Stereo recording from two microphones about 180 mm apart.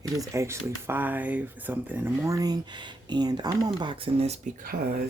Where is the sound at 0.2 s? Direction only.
15° right (ahead or behind); by 4.4 s 35° right (ahead or behind).